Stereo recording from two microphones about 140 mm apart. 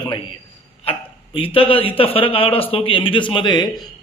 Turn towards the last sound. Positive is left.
turn(degrees=30)  # may be behind; listen again after turning